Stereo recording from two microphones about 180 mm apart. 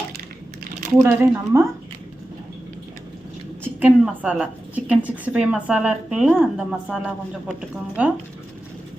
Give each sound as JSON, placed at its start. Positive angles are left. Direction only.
{"t": 1.0, "sound": "speech", "side_deg": -15}
{"t": 3.8, "sound": "a woman's voice", "side_deg": -10}